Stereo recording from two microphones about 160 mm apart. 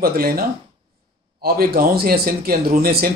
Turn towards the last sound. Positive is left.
turn(degrees=-70)  # may be behind; listen again after turning